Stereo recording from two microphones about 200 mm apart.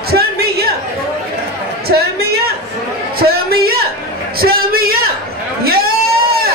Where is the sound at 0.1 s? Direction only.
50° right (ahead or behind).